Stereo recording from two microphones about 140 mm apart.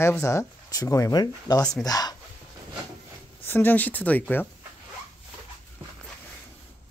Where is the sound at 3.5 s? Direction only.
15° left (ahead or behind).